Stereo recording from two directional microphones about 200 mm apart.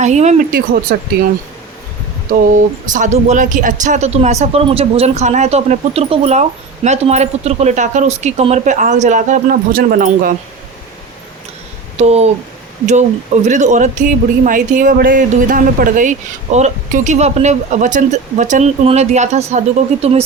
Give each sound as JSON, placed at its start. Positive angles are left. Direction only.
{"t": 0.0, "sound": "speech", "side_deg": -35}
{"t": 0.9, "sound": "speech", "side_deg": -50}
{"t": 2.9, "sound": "speech", "side_deg": -35}
{"t": 11.9, "sound": "speech", "side_deg": -35}